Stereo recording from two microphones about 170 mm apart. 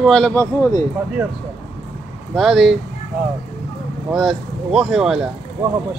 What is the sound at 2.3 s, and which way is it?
Speech, centre (ahead or behind).